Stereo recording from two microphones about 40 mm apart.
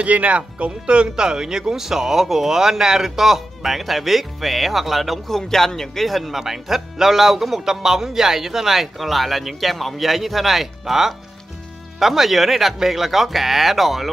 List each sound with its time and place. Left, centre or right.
0.0 s speech: right; by 14.1 s centre